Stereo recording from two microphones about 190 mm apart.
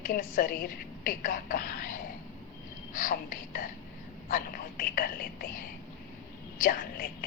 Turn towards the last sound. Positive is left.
turn(degrees=50)  # may be behind; listen again after turning